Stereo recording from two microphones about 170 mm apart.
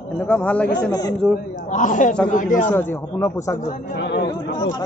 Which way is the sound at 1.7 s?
50° left (ahead or behind).